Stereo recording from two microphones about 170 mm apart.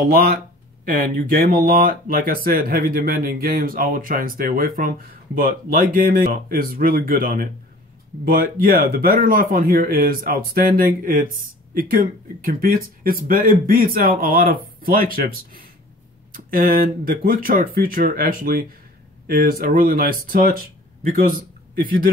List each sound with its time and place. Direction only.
0.0 s a man's voice: 55° right (ahead or behind)